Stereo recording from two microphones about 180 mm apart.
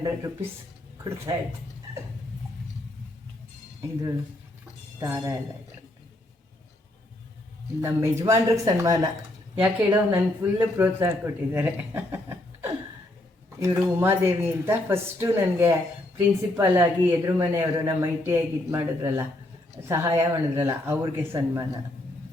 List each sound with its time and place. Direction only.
1.0 s a woman's voice: 15° right (ahead or behind)
4.9 s speech: 15° right (ahead or behind)
7.8 s a woman's voice: 15° right (ahead or behind)
13.7 s a woman's voice: 10° right (ahead or behind)